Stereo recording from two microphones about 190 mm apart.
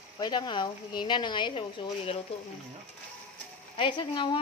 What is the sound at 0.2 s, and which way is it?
Speech, 20° left (ahead or behind).